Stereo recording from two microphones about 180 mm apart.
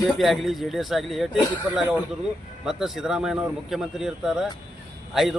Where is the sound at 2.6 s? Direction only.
Centre (ahead or behind).